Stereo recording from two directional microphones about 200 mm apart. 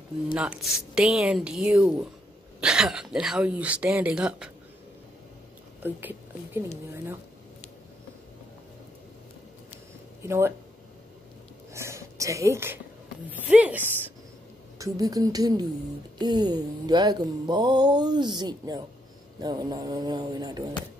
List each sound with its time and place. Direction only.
0.4 s speech: 5° right (ahead or behind)
5.8 s a woman's voice: 10° right (ahead or behind)
10.2 s speech: 10° right (ahead or behind)
11.7 s whispering: 15° right (ahead or behind)
13.3 s speech: 5° right (ahead or behind)
14.8 s mantra: 20° right (ahead or behind)